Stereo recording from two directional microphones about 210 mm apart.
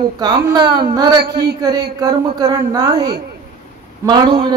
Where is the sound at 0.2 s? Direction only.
20° right (ahead or behind).